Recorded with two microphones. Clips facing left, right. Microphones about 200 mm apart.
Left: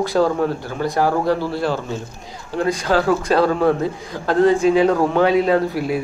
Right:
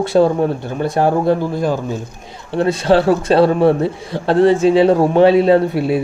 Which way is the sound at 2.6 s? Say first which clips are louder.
Right 5 dB; 30° right (ahead or behind).